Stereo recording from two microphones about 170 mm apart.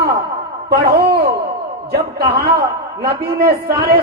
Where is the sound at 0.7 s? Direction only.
65° right (ahead or behind).